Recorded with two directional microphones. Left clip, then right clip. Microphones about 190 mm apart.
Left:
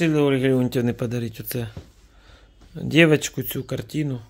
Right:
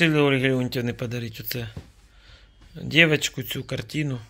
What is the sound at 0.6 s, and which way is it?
Speech, 45° left (ahead or behind).